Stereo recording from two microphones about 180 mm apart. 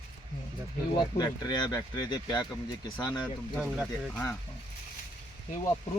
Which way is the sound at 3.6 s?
5° right (ahead or behind).